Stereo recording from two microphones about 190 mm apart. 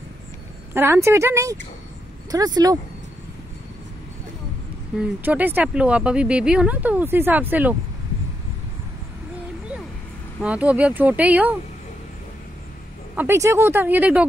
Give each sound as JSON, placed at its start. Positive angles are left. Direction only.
{"t": 0.7, "sound": "speech", "side_deg": -10}
{"t": 4.9, "sound": "speech", "side_deg": -5}
{"t": 10.4, "sound": "speech", "side_deg": -5}
{"t": 13.1, "sound": "speech", "side_deg": -10}